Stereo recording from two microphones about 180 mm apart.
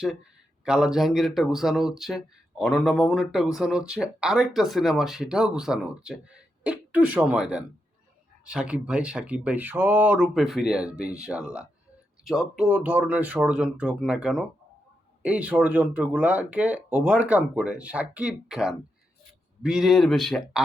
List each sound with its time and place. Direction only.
0.6 s speech: 5° right (ahead or behind)